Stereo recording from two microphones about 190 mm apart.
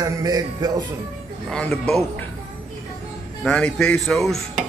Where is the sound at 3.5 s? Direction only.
5° left (ahead or behind).